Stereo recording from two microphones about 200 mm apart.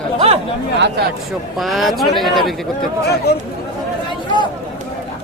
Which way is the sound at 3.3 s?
55° left (ahead or behind).